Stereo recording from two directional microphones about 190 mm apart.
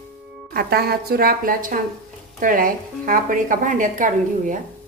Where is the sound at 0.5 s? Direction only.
55° right (ahead or behind).